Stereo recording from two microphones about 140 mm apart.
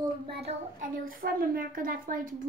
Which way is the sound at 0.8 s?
85° right.